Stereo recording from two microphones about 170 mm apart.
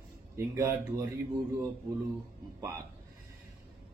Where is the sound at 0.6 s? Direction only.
15° right (ahead or behind).